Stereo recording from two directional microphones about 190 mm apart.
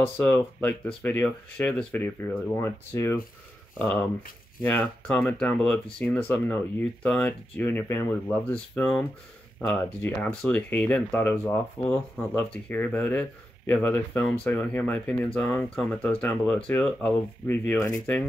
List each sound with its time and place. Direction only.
0.0 s speech: 10° left (ahead or behind)